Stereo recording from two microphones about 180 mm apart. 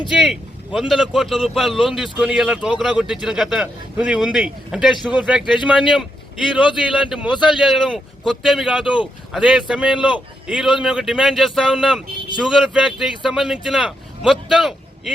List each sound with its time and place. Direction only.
0.1 s a man's voice: centre (ahead or behind)